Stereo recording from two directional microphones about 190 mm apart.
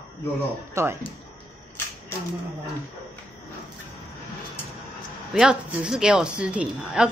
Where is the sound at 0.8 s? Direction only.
15° right (ahead or behind).